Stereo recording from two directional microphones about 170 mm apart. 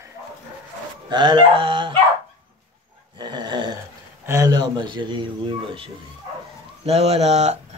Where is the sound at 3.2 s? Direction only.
25° right (ahead or behind).